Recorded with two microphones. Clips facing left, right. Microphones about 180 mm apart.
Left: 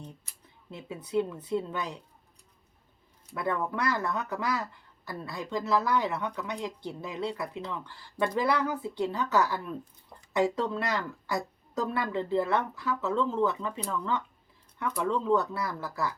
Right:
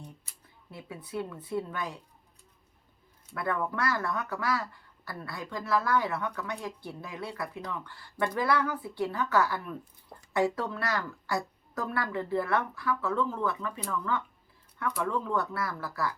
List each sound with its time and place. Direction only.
0.7 s speech: 25° left (ahead or behind)
3.3 s speech: 20° left (ahead or behind)